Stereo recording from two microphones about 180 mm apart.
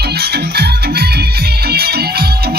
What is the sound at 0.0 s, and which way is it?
Music, 65° right (ahead or behind).